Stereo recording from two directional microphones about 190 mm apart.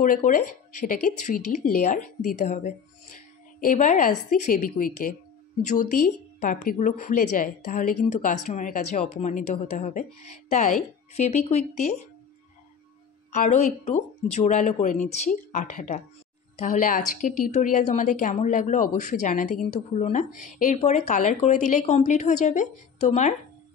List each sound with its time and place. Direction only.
0.0 s a woman's voice: 45° left (ahead or behind)
11.1 s a woman's voice: 35° left (ahead or behind)
13.3 s a woman's voice: 40° left (ahead or behind)